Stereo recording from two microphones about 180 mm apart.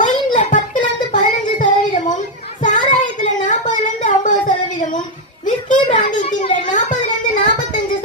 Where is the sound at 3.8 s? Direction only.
45° left (ahead or behind).